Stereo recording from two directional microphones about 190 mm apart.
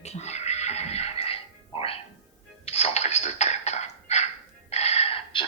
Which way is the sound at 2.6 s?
35° left (ahead or behind).